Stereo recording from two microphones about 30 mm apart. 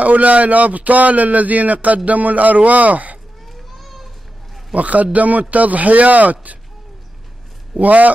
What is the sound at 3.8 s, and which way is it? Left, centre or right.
Children playing, centre.